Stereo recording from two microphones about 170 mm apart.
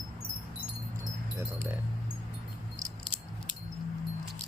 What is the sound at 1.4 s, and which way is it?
Speech, 15° right (ahead or behind).